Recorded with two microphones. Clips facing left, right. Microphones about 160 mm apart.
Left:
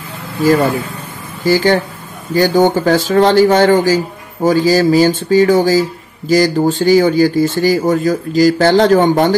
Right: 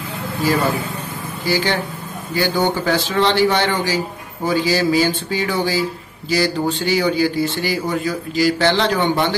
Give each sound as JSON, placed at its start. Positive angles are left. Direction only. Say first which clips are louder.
{"t": 0.4, "sound": "speech", "louder": "left 7 dB", "side_deg": 45}